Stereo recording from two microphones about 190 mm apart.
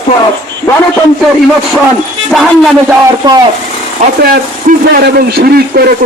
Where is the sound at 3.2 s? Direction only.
20° right (ahead or behind).